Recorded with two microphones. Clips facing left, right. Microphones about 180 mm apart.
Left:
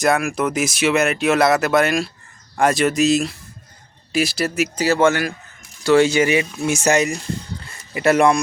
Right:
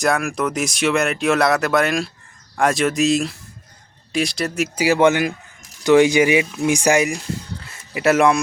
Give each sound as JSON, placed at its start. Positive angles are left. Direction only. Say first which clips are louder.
{"t": 0.0, "sound": "speech", "louder": "left 1 dB", "side_deg": 0}
{"t": 4.7, "sound": "speech", "louder": "right 2 dB", "side_deg": -10}